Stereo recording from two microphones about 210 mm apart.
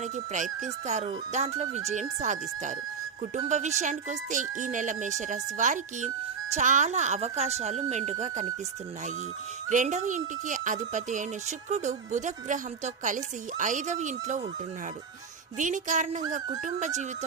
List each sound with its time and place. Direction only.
0.0 s speech: 35° right (ahead or behind)
9.6 s speech: 35° right (ahead or behind)
15.5 s speech: 35° right (ahead or behind)